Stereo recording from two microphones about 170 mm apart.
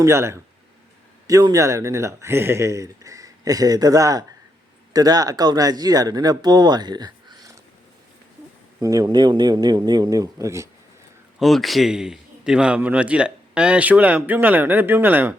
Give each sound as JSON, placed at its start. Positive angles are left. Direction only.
{"t": 0.0, "sound": "a man's voice", "side_deg": -15}
{"t": 8.8, "sound": "speech", "side_deg": -20}
{"t": 11.3, "sound": "a man's voice", "side_deg": 0}